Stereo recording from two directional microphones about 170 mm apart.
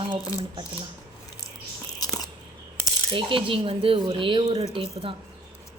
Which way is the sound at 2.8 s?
30° right (ahead or behind).